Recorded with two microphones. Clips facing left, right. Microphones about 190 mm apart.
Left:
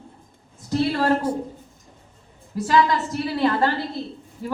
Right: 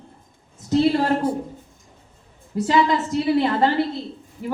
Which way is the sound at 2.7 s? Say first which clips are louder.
Even; 20° right (ahead or behind).